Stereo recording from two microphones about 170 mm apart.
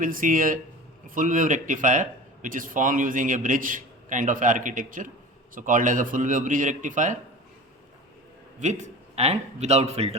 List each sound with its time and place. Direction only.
0.0 s speech: 50° right (ahead or behind)
8.5 s a man's voice: 45° right (ahead or behind)